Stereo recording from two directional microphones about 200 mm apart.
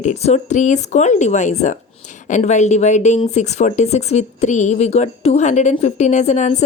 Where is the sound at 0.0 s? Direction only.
35° left (ahead or behind).